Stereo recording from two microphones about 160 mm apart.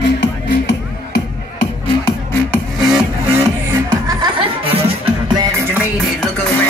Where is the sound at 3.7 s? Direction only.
30° right (ahead or behind).